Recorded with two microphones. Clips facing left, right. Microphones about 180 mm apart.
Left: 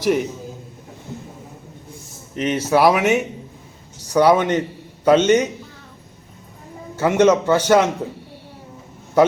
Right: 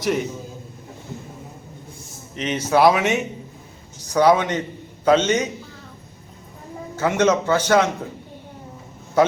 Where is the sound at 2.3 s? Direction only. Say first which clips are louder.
Left 4 dB; 50° left (ahead or behind).